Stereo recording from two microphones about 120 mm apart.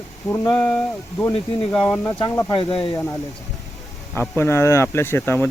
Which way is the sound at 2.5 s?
50° left (ahead or behind).